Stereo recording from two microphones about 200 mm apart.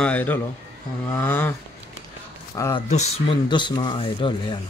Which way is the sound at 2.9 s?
35° left (ahead or behind).